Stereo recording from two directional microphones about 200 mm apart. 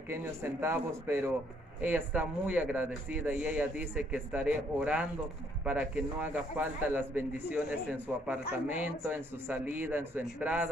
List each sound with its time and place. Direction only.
0.1 s a man's voice: 10° right (ahead or behind)